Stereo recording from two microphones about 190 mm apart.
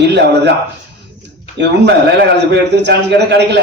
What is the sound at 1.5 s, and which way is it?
A man's voice, 65° right (ahead or behind).